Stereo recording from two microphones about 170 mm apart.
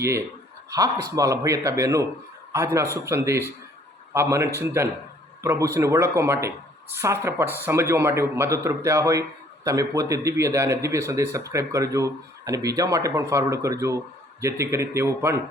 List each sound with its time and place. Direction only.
1.1 s a man's voice: 20° right (ahead or behind)